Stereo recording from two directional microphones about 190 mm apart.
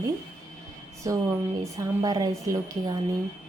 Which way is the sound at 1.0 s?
15° right (ahead or behind).